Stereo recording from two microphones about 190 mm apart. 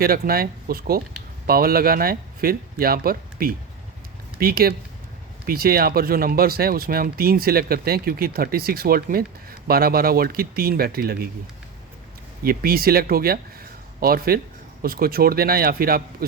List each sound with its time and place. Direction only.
0.0 s speech: 50° right (ahead or behind)
12.4 s speech: 50° right (ahead or behind)